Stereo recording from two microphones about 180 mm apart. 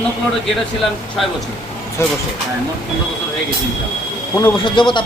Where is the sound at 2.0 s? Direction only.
15° left (ahead or behind).